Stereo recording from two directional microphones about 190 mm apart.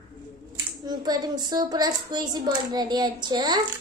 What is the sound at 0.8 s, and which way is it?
A child's voice, 20° right (ahead or behind).